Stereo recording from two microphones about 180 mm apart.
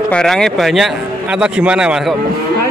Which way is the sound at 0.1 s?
5° left (ahead or behind).